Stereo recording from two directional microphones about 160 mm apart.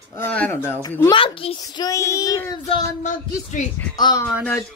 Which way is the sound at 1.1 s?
35° left (ahead or behind).